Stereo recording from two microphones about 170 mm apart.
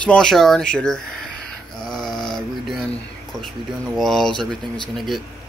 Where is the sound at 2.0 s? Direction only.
25° left (ahead or behind).